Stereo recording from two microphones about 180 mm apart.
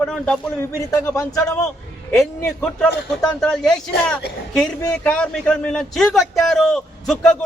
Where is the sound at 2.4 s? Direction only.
5° left (ahead or behind).